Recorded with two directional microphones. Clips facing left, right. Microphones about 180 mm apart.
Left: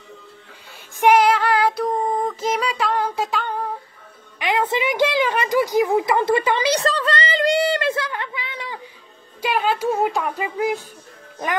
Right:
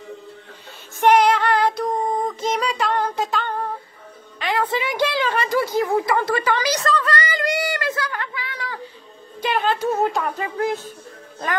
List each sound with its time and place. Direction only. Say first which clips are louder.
1.0 s female singing: even; 5° left (ahead or behind)
4.4 s a sound: left 2 dB; 20° left (ahead or behind)
9.4 s speech: even; 5° left (ahead or behind)